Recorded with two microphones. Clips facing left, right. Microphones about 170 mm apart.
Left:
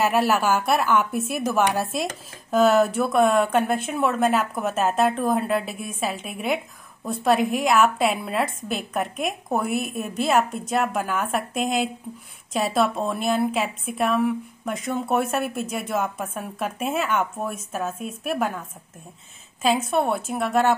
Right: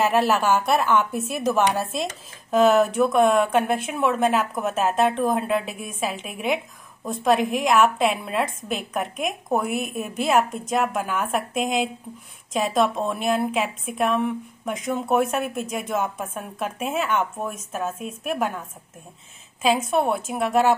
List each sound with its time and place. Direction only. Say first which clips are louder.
0.0 s a woman's voice: right 1 dB; 5° left (ahead or behind)
19.6 s a woman's voice: right 1 dB; centre (ahead or behind)